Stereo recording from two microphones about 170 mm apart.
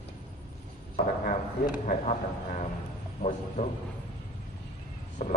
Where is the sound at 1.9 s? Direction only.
45° left (ahead or behind).